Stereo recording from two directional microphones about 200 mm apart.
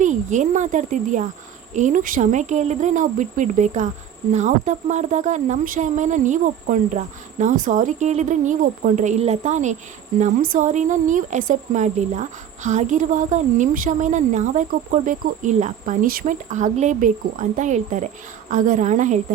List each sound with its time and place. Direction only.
0.0 s speech: 40° right (ahead or behind)